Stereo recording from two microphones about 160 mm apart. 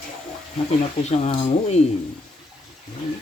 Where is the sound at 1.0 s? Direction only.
45° left (ahead or behind).